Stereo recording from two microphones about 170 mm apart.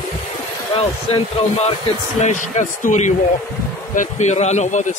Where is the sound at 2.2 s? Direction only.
45° left (ahead or behind).